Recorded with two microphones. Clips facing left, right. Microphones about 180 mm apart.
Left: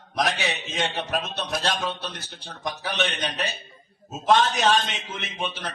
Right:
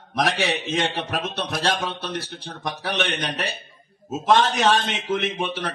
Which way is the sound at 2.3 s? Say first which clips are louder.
Right 2 dB; 55° right (ahead or behind).